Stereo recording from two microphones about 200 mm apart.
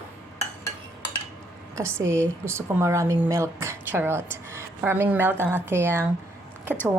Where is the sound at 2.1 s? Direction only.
15° right (ahead or behind).